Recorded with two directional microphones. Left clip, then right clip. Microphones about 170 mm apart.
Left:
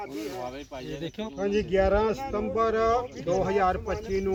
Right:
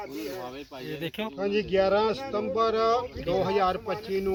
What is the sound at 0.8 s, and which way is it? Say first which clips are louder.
Speech: right 4 dB; centre (ahead or behind).